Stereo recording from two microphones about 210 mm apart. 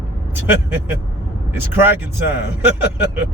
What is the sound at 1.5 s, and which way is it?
A man's voice, 10° right (ahead or behind).